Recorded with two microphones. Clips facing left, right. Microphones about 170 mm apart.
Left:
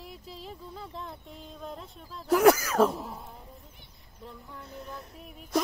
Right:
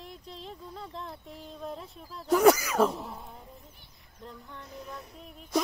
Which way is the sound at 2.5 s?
10° right (ahead or behind).